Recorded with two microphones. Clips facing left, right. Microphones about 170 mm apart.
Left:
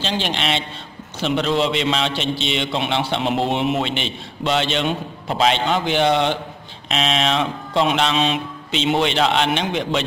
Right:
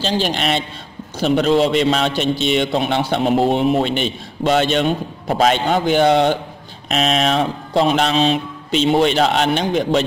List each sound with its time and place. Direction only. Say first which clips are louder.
0.0 s a man's voice: right 4 dB; 40° right (ahead or behind)